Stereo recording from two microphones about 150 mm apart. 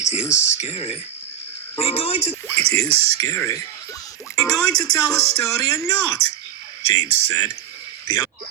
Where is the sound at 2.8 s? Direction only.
40° right (ahead or behind).